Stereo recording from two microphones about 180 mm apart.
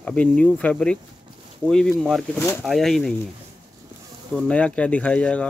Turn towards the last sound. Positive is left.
turn(degrees=5)  # may be behind; listen again after turning